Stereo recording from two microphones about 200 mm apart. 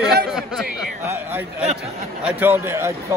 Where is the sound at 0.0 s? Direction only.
5° right (ahead or behind).